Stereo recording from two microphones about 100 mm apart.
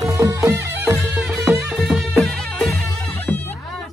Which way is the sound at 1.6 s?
5° right (ahead or behind).